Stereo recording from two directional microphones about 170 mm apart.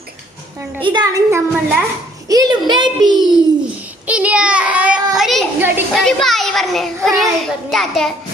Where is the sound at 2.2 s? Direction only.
20° right (ahead or behind).